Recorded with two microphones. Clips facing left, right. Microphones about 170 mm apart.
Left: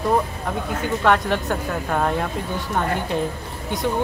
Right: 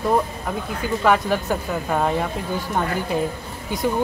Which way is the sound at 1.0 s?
5° right (ahead or behind).